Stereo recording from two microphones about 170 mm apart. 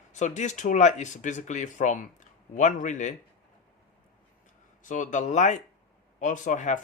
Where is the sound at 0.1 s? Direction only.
45° left (ahead or behind).